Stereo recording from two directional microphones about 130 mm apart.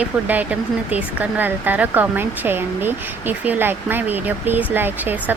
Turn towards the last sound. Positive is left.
turn(degrees=-15)  # may be behind; listen again after turning